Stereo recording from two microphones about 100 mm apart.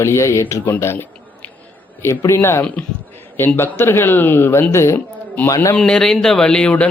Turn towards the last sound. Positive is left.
turn(degrees=10)  # may be behind; listen again after turning